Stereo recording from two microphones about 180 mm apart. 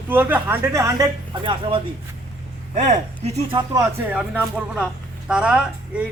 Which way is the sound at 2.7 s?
40° right (ahead or behind).